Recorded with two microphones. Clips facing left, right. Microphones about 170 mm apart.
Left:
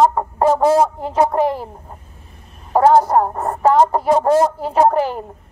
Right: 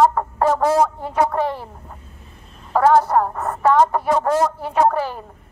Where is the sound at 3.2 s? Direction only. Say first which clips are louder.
Left 2 dB; 30° left (ahead or behind).